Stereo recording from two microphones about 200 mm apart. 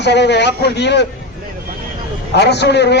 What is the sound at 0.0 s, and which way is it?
A man's voice, 60° left (ahead or behind).